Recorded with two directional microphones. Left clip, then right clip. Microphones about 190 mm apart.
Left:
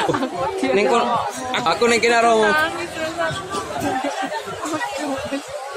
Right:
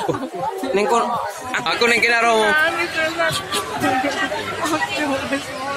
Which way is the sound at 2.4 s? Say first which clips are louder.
Right 1 dB; 30° right (ahead or behind).